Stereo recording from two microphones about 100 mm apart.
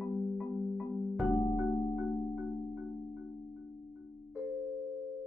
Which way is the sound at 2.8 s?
Centre (ahead or behind).